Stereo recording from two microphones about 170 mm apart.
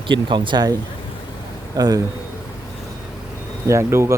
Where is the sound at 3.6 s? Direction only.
15° right (ahead or behind).